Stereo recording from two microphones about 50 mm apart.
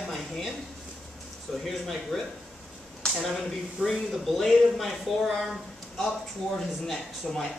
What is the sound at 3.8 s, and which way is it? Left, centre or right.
Speech, right.